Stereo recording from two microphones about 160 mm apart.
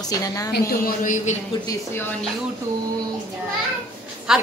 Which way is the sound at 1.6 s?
15° left (ahead or behind).